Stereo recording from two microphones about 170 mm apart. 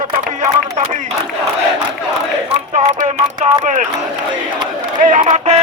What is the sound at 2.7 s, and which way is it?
Music, 45° right (ahead or behind).